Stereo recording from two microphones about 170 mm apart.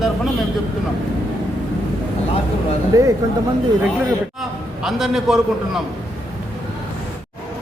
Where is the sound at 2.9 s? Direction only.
20° right (ahead or behind).